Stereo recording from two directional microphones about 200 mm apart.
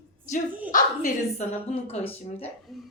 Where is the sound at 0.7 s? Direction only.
40° left (ahead or behind).